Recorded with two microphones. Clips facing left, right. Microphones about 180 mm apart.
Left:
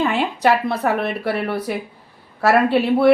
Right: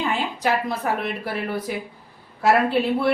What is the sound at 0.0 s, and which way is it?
A woman's voice, 70° left (ahead or behind).